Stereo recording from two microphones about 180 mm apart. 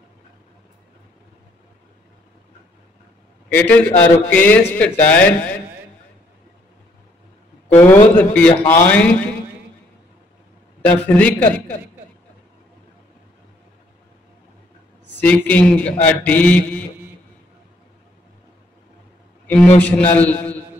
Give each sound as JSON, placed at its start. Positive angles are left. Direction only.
{"t": 3.5, "sound": "a man's voice", "side_deg": 10}
{"t": 7.7, "sound": "a man's voice", "side_deg": 10}
{"t": 10.9, "sound": "a man's voice", "side_deg": 10}
{"t": 15.1, "sound": "a man's voice", "side_deg": 10}
{"t": 19.4, "sound": "a sound", "side_deg": 5}
{"t": 19.8, "sound": "a man's voice", "side_deg": 10}